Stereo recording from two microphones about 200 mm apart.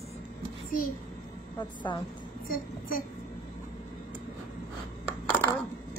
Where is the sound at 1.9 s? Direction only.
20° left (ahead or behind).